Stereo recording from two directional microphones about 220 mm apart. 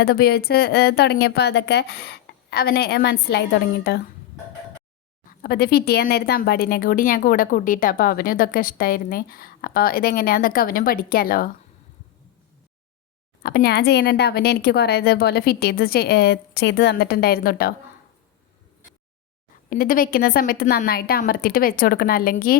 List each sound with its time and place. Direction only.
0.0 s speech: 45° left (ahead or behind)
5.4 s a woman's voice: 45° left (ahead or behind)
13.4 s speech: 45° left (ahead or behind)
19.7 s speech: 40° left (ahead or behind)